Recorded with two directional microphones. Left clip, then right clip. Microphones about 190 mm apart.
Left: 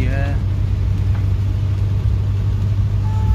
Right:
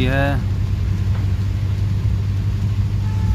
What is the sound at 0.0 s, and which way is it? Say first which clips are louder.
Vehicle: right 7 dB; 25° right (ahead or behind).